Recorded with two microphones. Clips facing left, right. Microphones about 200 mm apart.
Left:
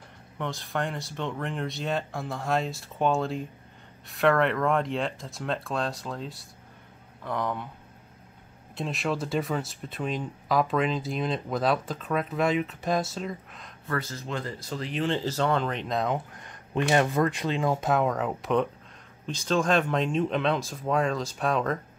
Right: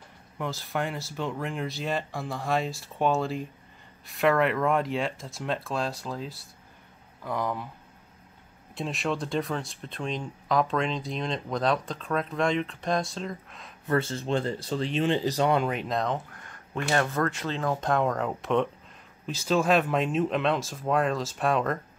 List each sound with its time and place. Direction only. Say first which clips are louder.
0.4 s speech: even; centre (ahead or behind)
8.7 s speech: even; centre (ahead or behind)
13.8 s speech: right 6 dB; 25° right (ahead or behind); by 16.2 s centre (ahead or behind)
16.4 s speech: left 4 dB; 15° left (ahead or behind); by 21.7 s centre (ahead or behind)